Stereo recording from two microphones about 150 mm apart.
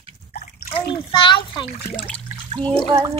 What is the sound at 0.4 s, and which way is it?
A child's voice, 40° left (ahead or behind).